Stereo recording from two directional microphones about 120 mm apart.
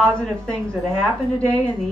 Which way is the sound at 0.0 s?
10° left (ahead or behind).